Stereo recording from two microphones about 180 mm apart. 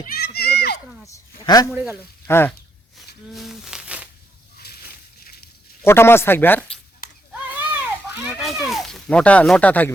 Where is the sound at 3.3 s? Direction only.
Centre (ahead or behind).